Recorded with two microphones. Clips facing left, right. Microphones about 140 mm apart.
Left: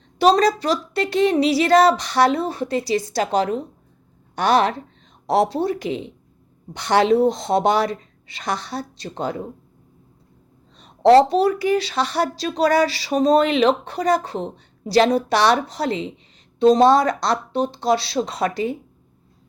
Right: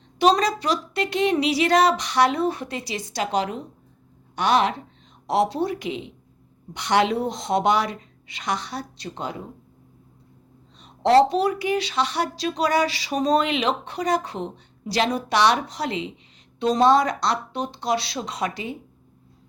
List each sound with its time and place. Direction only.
0.2 s speech: 35° left (ahead or behind)
10.8 s speech: 35° left (ahead or behind)